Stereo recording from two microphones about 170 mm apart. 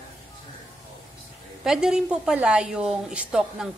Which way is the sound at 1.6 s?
5° right (ahead or behind).